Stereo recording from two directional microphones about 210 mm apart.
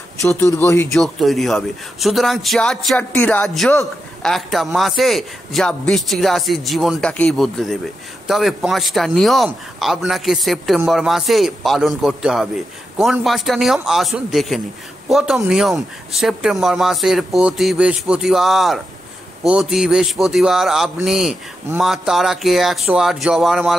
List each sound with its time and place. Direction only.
0.2 s a man's voice: 10° left (ahead or behind)